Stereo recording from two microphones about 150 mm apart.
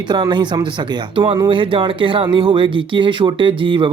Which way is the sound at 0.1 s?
30° right (ahead or behind).